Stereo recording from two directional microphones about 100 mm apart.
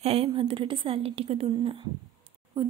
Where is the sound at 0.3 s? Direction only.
65° right (ahead or behind).